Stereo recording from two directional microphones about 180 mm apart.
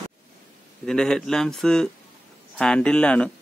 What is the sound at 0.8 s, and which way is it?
Speech, 5° left (ahead or behind).